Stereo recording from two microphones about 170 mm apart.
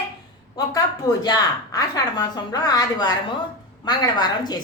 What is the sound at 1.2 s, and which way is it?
A woman's voice, 25° left (ahead or behind).